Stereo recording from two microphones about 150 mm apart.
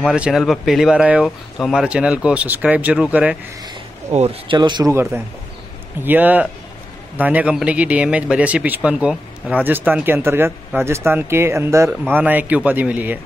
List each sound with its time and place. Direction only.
0.0 s speech: 5° right (ahead or behind)
4.1 s speech: 45° right (ahead or behind)
4.6 s speech: 30° right (ahead or behind)
6.0 s speech: 10° right (ahead or behind)